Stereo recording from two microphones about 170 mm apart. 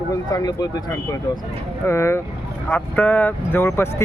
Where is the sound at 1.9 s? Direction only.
15° left (ahead or behind).